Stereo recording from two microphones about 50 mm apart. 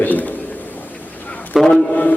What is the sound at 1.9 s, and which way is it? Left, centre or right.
Speech, left.